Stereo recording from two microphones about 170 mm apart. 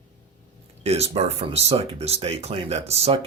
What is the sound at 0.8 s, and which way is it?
Speech, 40° right (ahead or behind).